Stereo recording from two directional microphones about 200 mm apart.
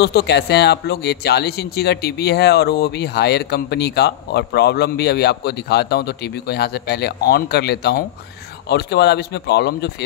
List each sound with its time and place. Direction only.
0.0 s speech: 55° left (ahead or behind)